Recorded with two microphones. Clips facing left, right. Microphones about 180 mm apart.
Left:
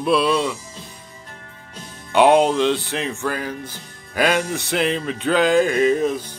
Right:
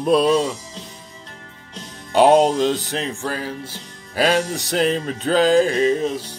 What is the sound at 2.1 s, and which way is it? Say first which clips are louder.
Music: right 1 dB; 40° right (ahead or behind).